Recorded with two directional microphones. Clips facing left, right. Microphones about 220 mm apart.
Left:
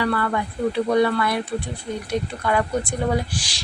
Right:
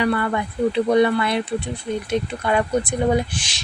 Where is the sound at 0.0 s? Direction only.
20° right (ahead or behind).